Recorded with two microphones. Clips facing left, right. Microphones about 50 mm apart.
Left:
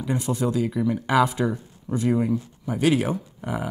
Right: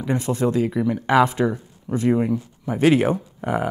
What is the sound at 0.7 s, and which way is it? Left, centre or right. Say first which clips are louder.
Speech: right 3 dB; right.